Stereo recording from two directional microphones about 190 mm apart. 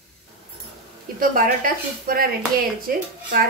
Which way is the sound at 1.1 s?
50° right (ahead or behind).